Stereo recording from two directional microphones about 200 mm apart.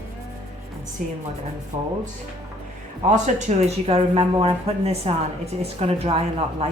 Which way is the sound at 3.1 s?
35° right (ahead or behind).